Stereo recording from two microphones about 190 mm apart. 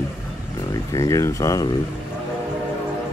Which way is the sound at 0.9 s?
15° left (ahead or behind).